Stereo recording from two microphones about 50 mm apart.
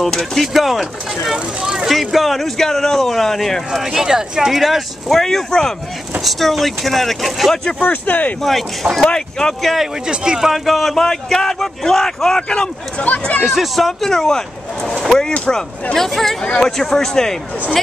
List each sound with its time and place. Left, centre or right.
0.0 s speech: centre
0.5 s speech: centre
1.3 s speech: centre
1.9 s speech: centre
3.8 s speech: centre
7.8 s speech: left
8.4 s speech: centre
9.0 s speech: centre
10.0 s speech: centre; by 13.5 s left
13.5 s speech: centre